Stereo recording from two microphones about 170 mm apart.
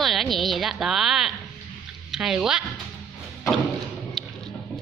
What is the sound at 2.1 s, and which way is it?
Speech, 5° right (ahead or behind).